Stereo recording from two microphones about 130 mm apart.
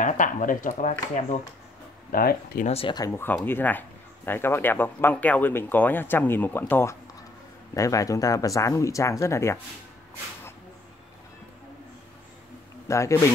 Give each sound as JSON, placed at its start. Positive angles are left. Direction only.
{"t": 0.0, "sound": "speech", "side_deg": 85}
{"t": 2.1, "sound": "speech", "side_deg": 90}
{"t": 3.1, "sound": "speech", "side_deg": 20}
{"t": 12.8, "sound": "speech", "side_deg": 25}